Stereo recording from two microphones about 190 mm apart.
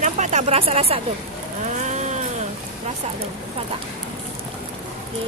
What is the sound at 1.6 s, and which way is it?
Vehicle, 40° right (ahead or behind).